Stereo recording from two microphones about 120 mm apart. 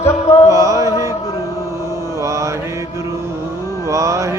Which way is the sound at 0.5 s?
30° right (ahead or behind).